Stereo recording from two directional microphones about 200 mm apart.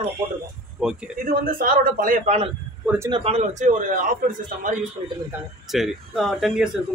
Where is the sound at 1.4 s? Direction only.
45° right (ahead or behind).